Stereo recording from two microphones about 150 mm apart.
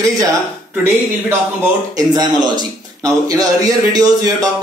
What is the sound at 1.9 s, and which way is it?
A man's voice, 25° right (ahead or behind).